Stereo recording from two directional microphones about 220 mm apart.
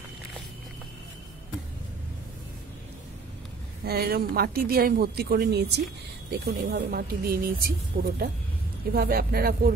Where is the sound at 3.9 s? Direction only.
45° right (ahead or behind).